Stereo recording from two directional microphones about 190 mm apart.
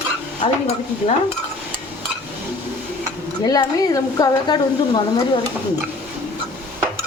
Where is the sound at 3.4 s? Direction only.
20° left (ahead or behind).